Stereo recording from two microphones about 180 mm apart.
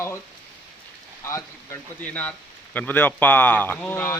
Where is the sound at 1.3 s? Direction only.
10° left (ahead or behind).